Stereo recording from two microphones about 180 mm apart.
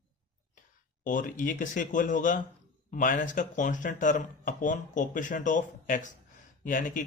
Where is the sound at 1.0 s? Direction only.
45° left (ahead or behind).